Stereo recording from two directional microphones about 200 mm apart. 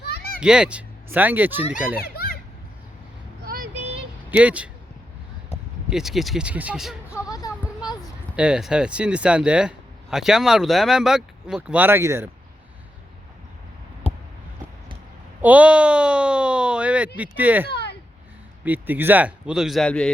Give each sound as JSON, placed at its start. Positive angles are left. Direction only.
{"t": 0.0, "sound": "children playing", "side_deg": 55}
{"t": 0.3, "sound": "speech", "side_deg": -5}
{"t": 2.0, "sound": "children playing", "side_deg": 50}
{"t": 3.8, "sound": "a sound", "side_deg": -30}
{"t": 4.3, "sound": "speech", "side_deg": -5}
{"t": 5.9, "sound": "speech", "side_deg": 0}
{"t": 7.3, "sound": "a sound", "side_deg": 20}
{"t": 8.4, "sound": "speech", "side_deg": -5}
{"t": 14.0, "sound": "a sound", "side_deg": 30}
{"t": 15.4, "sound": "speech", "side_deg": -5}
{"t": 17.7, "sound": "a sound", "side_deg": 55}
{"t": 18.6, "sound": "speech", "side_deg": -10}